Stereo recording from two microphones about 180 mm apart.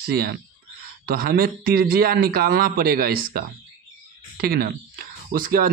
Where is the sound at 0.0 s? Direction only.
60° right (ahead or behind).